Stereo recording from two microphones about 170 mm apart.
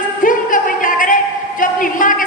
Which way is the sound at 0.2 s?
50° left (ahead or behind).